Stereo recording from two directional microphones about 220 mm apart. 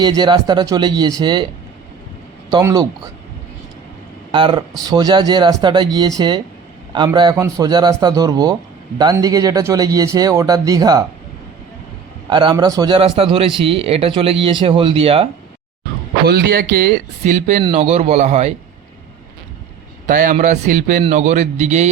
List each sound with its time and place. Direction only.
0.0 s speech: 20° right (ahead or behind)
2.5 s speech: 20° right (ahead or behind)
4.3 s speech: 20° right (ahead or behind)
12.3 s speech: 20° right (ahead or behind)
16.2 s speech: 45° right (ahead or behind); by 18.5 s 30° right (ahead or behind)
20.1 s a man's voice: 35° right (ahead or behind)